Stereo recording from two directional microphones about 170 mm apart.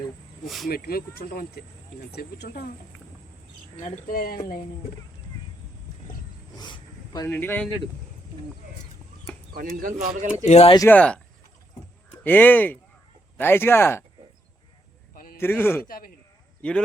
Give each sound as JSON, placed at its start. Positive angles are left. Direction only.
{"t": 0.4, "sound": "speech", "side_deg": 0}
{"t": 0.7, "sound": "speech", "side_deg": 60}
{"t": 3.8, "sound": "speech", "side_deg": 45}
{"t": 6.6, "sound": "a sound", "side_deg": 25}
{"t": 7.3, "sound": "speech", "side_deg": 10}
{"t": 9.5, "sound": "speech", "side_deg": -55}
{"t": 10.4, "sound": "speech", "side_deg": 40}
{"t": 10.8, "sound": "speech", "side_deg": 10}
{"t": 12.2, "sound": "speech", "side_deg": 10}
{"t": 15.1, "sound": "a sound", "side_deg": 60}
{"t": 15.4, "sound": "speech", "side_deg": 10}
{"t": 15.9, "sound": "speech", "side_deg": 60}
{"t": 16.6, "sound": "speech", "side_deg": 5}